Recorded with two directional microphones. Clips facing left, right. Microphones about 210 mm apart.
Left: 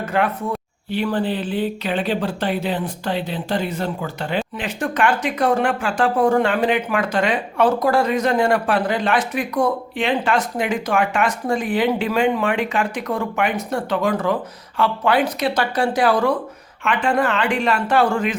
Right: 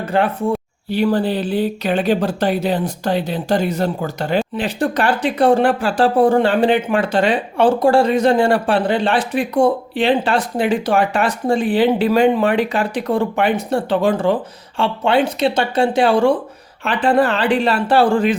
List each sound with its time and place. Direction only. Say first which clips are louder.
0.0 s speech: right 4 dB; 30° right (ahead or behind)